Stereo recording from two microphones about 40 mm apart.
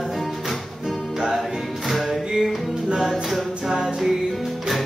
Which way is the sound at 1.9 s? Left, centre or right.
Centre.